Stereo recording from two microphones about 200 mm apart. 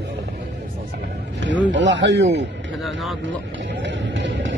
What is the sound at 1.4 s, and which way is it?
Speech, 65° right (ahead or behind).